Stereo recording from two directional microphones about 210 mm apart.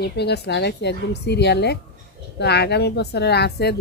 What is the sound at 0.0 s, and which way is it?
Speech, 50° left (ahead or behind).